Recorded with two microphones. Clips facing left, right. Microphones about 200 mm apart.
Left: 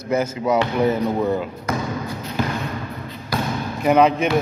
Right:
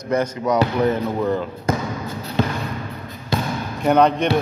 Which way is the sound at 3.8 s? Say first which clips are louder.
Even; 5° left (ahead or behind).